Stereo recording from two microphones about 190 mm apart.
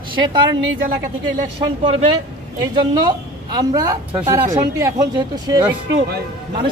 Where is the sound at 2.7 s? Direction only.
20° right (ahead or behind).